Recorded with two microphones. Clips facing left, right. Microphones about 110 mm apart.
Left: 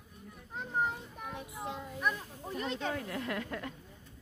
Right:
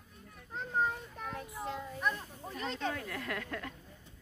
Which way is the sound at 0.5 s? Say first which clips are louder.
Right 1 dB; 15° left (ahead or behind).